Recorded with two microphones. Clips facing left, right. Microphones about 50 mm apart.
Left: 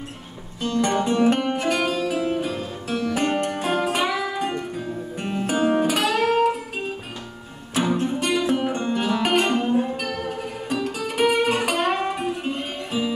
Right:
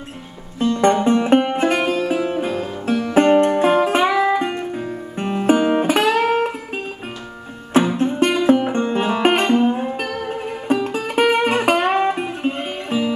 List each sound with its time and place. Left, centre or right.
0.6 s music: right
7.7 s music: right